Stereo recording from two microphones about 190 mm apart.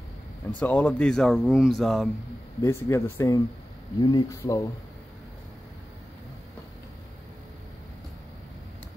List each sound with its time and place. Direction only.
0.5 s speech: 10° left (ahead or behind)
2.6 s speech: 15° left (ahead or behind)